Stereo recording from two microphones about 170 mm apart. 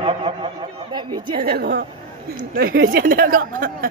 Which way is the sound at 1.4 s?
70° right (ahead or behind).